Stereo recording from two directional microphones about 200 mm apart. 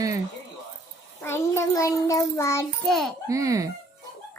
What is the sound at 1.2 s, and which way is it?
Child singing, 15° left (ahead or behind).